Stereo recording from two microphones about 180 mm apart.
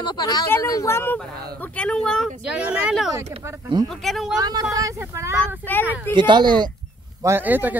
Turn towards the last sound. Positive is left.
turn(degrees=-10)  # may be behind; listen again after turning